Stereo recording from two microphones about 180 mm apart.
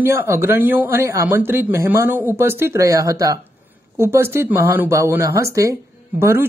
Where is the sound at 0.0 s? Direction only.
15° right (ahead or behind).